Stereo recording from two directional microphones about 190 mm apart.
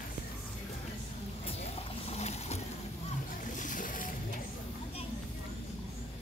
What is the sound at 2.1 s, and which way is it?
Boat, 35° left (ahead or behind).